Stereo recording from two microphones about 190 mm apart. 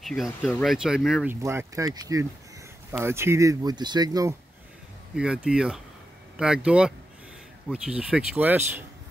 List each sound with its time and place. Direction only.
0.0 s speech: centre (ahead or behind); by 4.4 s 20° right (ahead or behind)
5.1 s speech: 5° right (ahead or behind)